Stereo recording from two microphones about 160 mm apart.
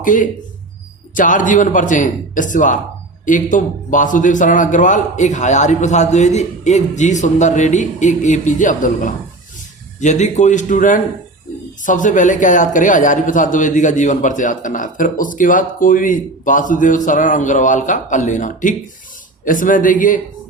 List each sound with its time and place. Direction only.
0.0 s a man's voice: 55° left (ahead or behind)